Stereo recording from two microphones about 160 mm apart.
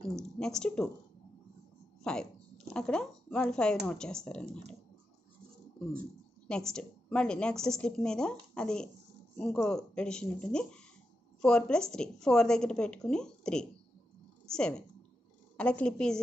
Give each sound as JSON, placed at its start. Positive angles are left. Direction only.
{"t": 0.0, "sound": "speech", "side_deg": 5}
{"t": 2.0, "sound": "a woman's voice", "side_deg": 5}
{"t": 6.4, "sound": "a woman's voice", "side_deg": 5}